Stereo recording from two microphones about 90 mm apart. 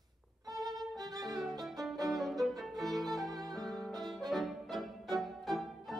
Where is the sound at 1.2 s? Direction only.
Centre (ahead or behind).